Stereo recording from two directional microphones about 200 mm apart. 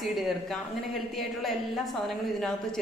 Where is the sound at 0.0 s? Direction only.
Centre (ahead or behind).